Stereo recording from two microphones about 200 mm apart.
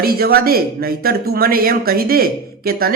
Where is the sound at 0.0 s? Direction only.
50° right (ahead or behind).